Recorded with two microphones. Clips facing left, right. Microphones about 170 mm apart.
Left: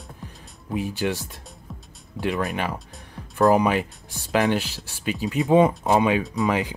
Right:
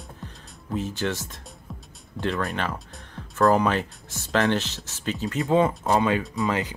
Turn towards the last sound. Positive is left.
turn(degrees=15)  # may be behind; listen again after turning